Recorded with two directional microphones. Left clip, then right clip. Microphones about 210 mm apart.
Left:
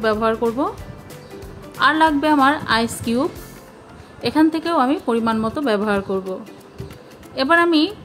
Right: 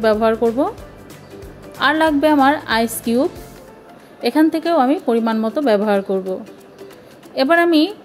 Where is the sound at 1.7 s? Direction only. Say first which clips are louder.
Even; 15° right (ahead or behind).